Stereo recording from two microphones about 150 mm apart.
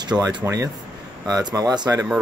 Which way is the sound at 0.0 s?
30° right (ahead or behind).